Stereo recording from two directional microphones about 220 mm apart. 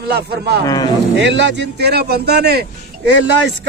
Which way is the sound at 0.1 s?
45° right (ahead or behind).